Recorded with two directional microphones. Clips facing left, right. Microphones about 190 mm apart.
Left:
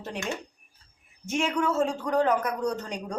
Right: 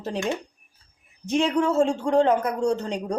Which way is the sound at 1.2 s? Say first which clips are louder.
Right 5 dB; 35° right (ahead or behind).